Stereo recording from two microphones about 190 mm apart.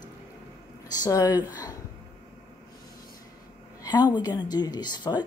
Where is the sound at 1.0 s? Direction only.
20° left (ahead or behind).